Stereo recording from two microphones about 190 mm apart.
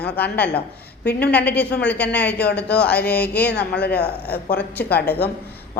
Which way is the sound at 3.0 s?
60° left (ahead or behind).